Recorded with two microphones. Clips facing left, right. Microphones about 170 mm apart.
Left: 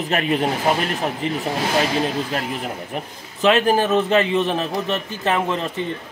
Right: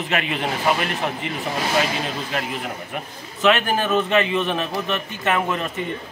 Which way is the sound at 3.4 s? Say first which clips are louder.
Left 3 dB; 35° left (ahead or behind).